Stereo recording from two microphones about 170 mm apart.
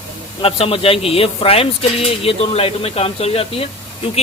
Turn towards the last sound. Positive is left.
turn(degrees=35)  # may be behind; listen again after turning